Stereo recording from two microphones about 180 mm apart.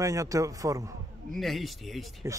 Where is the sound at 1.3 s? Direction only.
Centre (ahead or behind).